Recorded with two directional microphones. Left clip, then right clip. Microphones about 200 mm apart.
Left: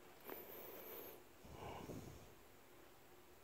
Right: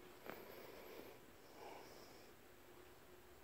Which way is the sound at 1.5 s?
15° left (ahead or behind).